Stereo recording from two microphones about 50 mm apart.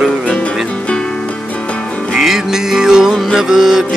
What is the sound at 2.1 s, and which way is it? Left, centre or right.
Music, centre.